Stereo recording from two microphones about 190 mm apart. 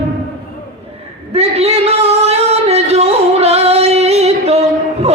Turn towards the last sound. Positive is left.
turn(degrees=-35)  # may be behind; listen again after turning